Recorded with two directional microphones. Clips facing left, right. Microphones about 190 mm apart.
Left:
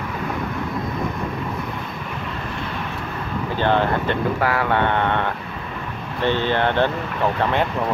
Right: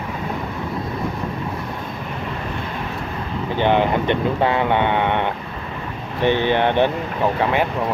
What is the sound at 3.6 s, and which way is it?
Speech, 15° right (ahead or behind).